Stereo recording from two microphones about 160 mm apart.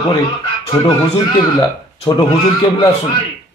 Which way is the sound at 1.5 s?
30° left (ahead or behind).